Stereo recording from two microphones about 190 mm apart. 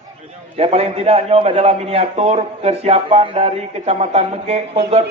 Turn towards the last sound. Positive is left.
turn(degrees=-30)  # may be behind; listen again after turning